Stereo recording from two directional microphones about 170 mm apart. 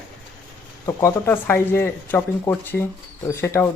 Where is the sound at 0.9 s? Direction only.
15° left (ahead or behind).